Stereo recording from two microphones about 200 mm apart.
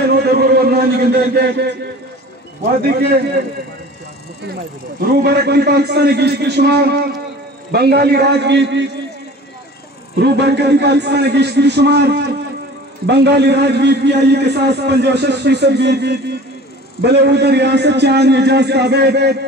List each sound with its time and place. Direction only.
0.0 s a sound: 50° right (ahead or behind)
2.9 s a man's voice: 50° right (ahead or behind)
5.0 s a man's voice: 55° right (ahead or behind)
10.1 s a man's voice: 55° right (ahead or behind)